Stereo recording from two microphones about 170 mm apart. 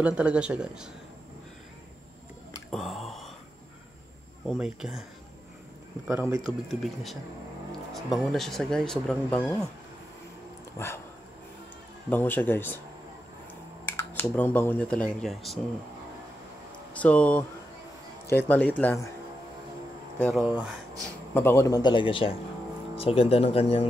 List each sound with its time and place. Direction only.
0.0 s speech: 5° right (ahead or behind)
2.7 s a sound: centre (ahead or behind)
4.5 s speech: 5° right (ahead or behind)
6.7 s speech: centre (ahead or behind)
10.8 s speech: 15° left (ahead or behind)
12.1 s speech: 10° left (ahead or behind)
13.8 s speech: 15° left (ahead or behind)
16.9 s speech: 10° left (ahead or behind)
20.2 s speech: 5° left (ahead or behind)
20.4 s speech: 10° right (ahead or behind)
21.3 s a man's voice: 15° left (ahead or behind); by 23.9 s 35° left (ahead or behind)